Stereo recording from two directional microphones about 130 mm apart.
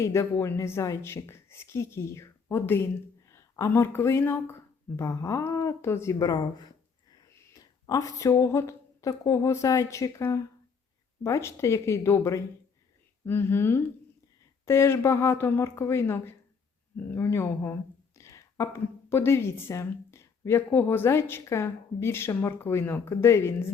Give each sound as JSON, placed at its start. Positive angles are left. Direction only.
{"t": 0.0, "sound": "a woman's voice", "side_deg": 20}